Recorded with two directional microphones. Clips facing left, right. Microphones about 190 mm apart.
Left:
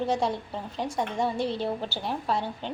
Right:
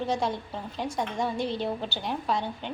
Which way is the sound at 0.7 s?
5° left (ahead or behind).